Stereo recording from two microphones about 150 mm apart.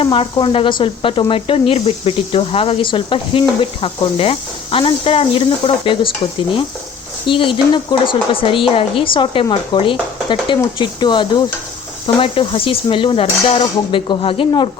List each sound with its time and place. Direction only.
0.0 s speech: 35° left (ahead or behind)
7.3 s speech: 35° left (ahead or behind)